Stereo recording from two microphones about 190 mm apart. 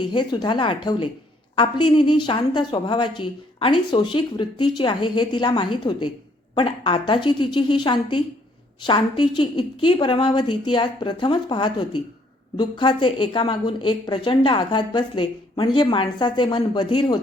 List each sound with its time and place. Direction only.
0.0 s a woman's voice: 25° left (ahead or behind)